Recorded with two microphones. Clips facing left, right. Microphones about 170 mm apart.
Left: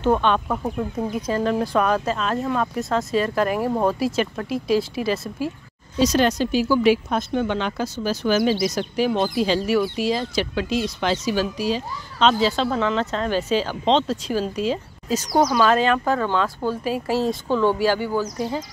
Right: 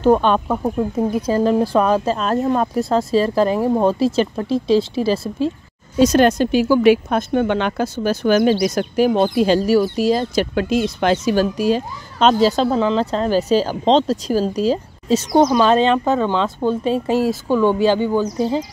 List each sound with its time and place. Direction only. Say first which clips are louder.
0.0 s speech: right 5 dB; 40° right (ahead or behind)
0.5 s speech: right 5 dB; 25° right (ahead or behind)
5.9 s speech: right 5 dB; 50° right (ahead or behind)
12.6 s speech: right 5 dB; 30° right (ahead or behind)